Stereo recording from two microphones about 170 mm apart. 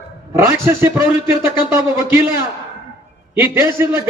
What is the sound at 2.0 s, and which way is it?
A man's voice, 15° right (ahead or behind).